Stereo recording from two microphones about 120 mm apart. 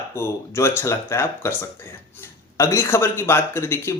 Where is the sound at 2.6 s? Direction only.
25° left (ahead or behind).